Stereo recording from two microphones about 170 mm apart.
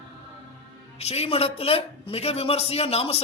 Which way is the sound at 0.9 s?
40° left (ahead or behind).